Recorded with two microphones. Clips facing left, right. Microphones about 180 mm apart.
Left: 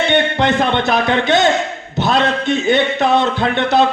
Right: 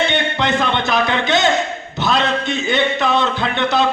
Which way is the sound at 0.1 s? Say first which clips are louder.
Left 4 dB; 55° left (ahead or behind).